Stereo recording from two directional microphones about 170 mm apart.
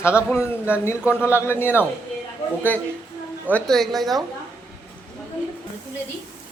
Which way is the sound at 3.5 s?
Centre (ahead or behind).